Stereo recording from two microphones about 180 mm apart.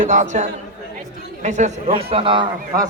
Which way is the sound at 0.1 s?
40° right (ahead or behind).